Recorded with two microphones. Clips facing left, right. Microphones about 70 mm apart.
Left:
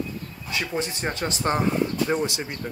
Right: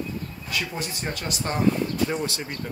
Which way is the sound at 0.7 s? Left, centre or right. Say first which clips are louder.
Left 4 dB; left.